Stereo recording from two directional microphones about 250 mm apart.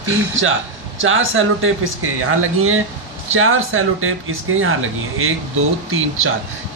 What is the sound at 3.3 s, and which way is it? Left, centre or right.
Speech, right.